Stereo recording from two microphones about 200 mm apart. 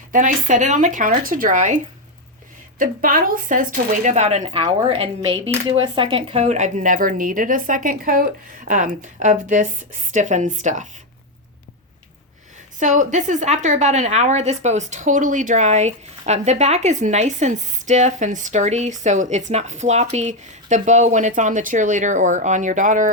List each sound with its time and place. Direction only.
0.1 s a woman's voice: 40° right (ahead or behind)
12.8 s a woman's voice: 35° right (ahead or behind)